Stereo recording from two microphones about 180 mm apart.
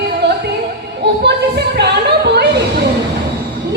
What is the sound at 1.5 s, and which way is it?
Singing, 70° right (ahead or behind).